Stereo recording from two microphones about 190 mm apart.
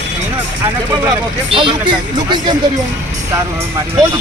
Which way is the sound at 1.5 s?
25° right (ahead or behind).